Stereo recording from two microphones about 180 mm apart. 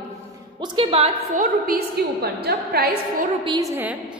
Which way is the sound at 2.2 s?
60° right (ahead or behind).